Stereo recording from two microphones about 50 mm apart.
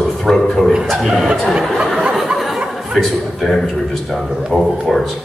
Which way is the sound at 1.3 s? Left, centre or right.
Centre.